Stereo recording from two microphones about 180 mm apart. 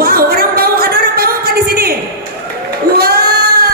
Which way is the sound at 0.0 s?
55° right (ahead or behind).